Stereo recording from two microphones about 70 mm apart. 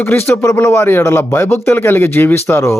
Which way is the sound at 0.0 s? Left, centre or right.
Left.